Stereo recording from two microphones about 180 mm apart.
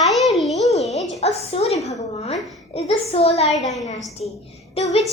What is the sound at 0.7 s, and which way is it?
A woman's voice, 35° left (ahead or behind).